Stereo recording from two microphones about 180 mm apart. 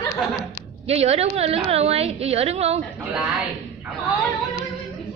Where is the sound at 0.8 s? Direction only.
35° right (ahead or behind).